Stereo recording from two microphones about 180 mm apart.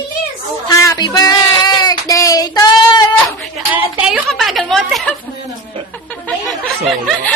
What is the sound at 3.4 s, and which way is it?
A woman's voice, 10° right (ahead or behind).